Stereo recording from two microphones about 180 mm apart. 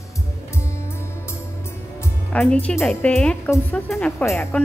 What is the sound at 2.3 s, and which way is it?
A woman's voice, 5° left (ahead or behind).